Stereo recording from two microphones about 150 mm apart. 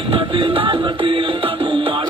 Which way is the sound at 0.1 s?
35° right (ahead or behind).